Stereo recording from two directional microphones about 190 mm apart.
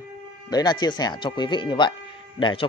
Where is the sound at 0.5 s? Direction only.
20° left (ahead or behind).